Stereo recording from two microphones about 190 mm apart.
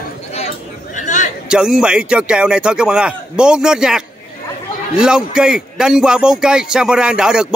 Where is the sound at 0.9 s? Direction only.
40° left (ahead or behind).